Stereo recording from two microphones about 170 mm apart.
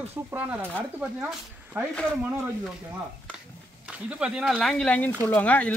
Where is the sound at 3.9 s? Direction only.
5° right (ahead or behind).